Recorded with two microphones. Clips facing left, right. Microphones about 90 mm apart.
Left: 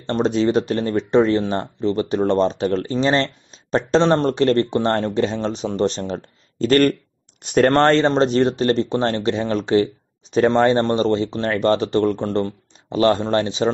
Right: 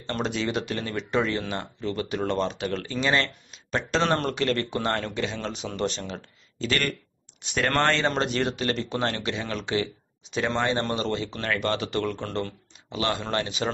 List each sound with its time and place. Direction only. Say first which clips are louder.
0.0 s speech: left 10 dB; 35° left (ahead or behind)